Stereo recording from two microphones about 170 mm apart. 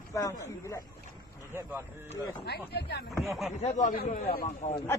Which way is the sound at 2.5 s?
70° left (ahead or behind).